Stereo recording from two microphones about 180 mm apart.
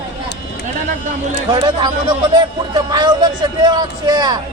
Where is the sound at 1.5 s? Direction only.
25° right (ahead or behind).